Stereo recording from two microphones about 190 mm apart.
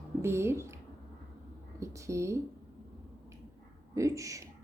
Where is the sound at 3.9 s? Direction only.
15° right (ahead or behind).